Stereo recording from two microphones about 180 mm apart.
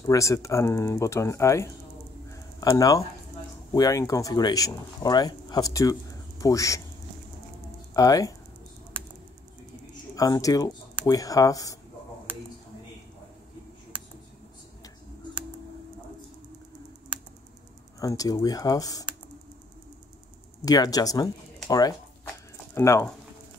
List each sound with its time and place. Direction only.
0.0 s speech: 20° left (ahead or behind)
2.3 s a sound: 20° left (ahead or behind)
3.7 s speech: 20° left (ahead or behind)
7.9 s speech: 20° left (ahead or behind)
10.1 s speech: 20° left (ahead or behind)
17.9 s speech: 20° left (ahead or behind)
20.6 s speech: 20° left (ahead or behind)